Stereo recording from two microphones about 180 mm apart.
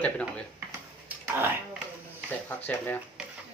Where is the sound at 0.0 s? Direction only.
5° left (ahead or behind).